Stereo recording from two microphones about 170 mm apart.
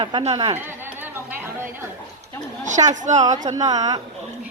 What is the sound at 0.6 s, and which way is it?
Chatter, 10° right (ahead or behind).